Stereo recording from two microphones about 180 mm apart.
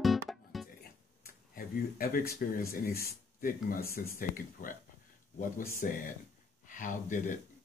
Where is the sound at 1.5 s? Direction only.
55° left (ahead or behind).